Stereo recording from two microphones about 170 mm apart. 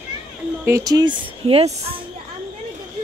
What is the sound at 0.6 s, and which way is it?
Speech, 20° right (ahead or behind).